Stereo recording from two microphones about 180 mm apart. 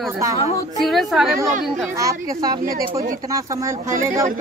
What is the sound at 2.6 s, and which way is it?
Speech, 55° right (ahead or behind).